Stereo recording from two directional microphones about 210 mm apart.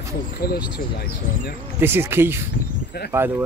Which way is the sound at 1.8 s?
10° right (ahead or behind).